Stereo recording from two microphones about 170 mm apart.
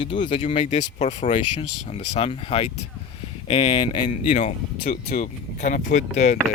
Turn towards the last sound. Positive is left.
turn(degrees=45)  # may be behind; listen again after turning